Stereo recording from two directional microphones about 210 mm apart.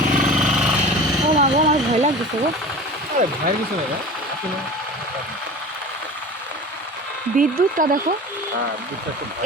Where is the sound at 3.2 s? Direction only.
35° right (ahead or behind).